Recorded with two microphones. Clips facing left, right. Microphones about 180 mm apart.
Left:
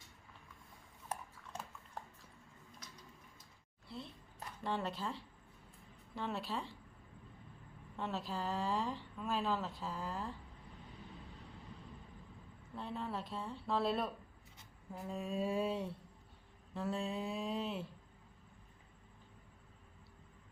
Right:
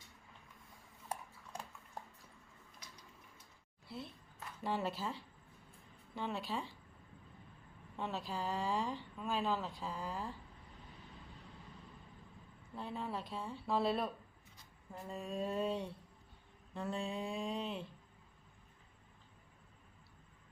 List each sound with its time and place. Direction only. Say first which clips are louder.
3.8 s a sound: right 1 dB; 5° right (ahead or behind)
4.6 s a woman's voice: right 1 dB; 5° right (ahead or behind)
7.9 s a woman's voice: even; centre (ahead or behind)
12.7 s a woman's voice: even; centre (ahead or behind)